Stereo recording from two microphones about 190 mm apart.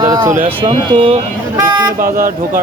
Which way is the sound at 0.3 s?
40° right (ahead or behind).